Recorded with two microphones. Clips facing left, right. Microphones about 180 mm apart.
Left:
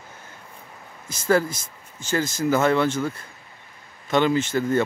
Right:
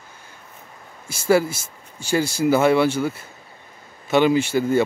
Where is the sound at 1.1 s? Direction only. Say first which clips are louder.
Right 3 dB; 10° right (ahead or behind).